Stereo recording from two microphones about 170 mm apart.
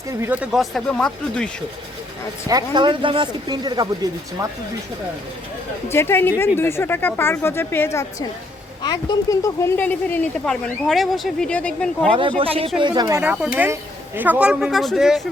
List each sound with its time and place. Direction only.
0.1 s speech: 10° right (ahead or behind); by 1.5 s 5° left (ahead or behind)
2.5 s speech: 25° right (ahead or behind)
5.9 s speech: 15° left (ahead or behind)
8.8 s speech: 25° left (ahead or behind); by 12.1 s 5° left (ahead or behind)
12.4 s speech: 30° right (ahead or behind)
13.2 s speech: 10° right (ahead or behind)